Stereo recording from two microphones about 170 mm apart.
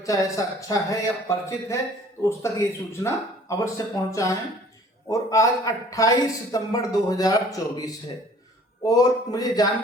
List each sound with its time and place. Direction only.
0.0 s a man's voice: 20° left (ahead or behind)